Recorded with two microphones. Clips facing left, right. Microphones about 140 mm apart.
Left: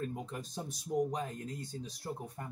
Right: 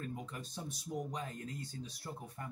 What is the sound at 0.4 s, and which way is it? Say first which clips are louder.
Speech: left 3 dB; 45° left (ahead or behind).